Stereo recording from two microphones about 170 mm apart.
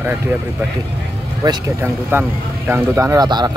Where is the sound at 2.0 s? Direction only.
10° right (ahead or behind).